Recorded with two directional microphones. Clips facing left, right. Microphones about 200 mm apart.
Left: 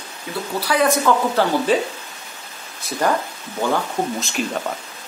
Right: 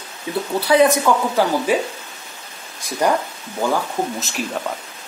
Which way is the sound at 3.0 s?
15° right (ahead or behind).